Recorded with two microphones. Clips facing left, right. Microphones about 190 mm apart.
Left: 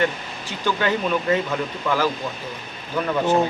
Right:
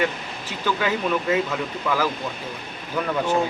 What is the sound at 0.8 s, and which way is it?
Speech, 5° right (ahead or behind).